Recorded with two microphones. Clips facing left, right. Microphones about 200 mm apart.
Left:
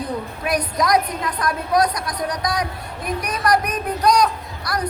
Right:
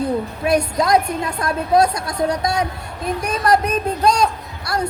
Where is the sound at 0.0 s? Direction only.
25° right (ahead or behind).